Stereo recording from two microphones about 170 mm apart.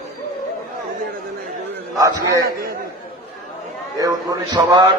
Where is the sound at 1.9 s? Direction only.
20° right (ahead or behind).